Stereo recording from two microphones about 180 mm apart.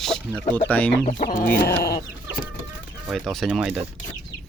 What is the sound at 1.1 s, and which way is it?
Chicken, 45° left (ahead or behind).